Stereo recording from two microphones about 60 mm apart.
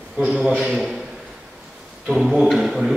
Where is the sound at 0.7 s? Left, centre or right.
Centre.